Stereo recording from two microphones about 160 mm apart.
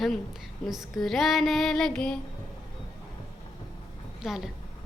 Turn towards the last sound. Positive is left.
turn(degrees=0)  # may be behind; listen again after turning